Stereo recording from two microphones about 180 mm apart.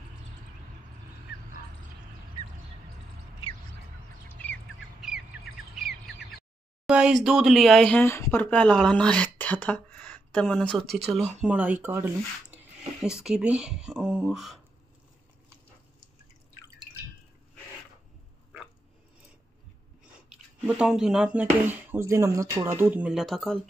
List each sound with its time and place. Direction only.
3.4 s a sound: 30° left (ahead or behind)
4.4 s squawk: 10° left (ahead or behind)
5.0 s squawk: centre (ahead or behind)
6.9 s speech: 5° right (ahead or behind)
20.2 s speech: 5° right (ahead or behind)